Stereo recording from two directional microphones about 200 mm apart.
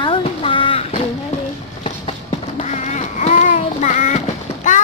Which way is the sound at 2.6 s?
35° left (ahead or behind).